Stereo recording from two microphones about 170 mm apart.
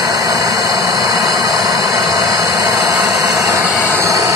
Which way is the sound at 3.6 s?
Centre (ahead or behind).